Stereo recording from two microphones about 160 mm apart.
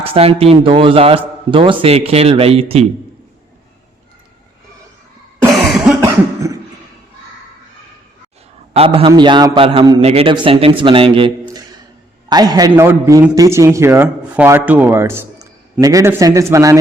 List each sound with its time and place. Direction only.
0.0 s a man's voice: 35° right (ahead or behind)
5.5 s cough: centre (ahead or behind)
6.0 s cough: 20° right (ahead or behind)
8.7 s a man's voice: 35° right (ahead or behind)
10.0 s a man's voice: 40° right (ahead or behind); by 16.7 s 20° right (ahead or behind)